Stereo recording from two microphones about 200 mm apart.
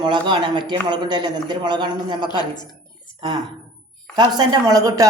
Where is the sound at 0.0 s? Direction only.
25° right (ahead or behind).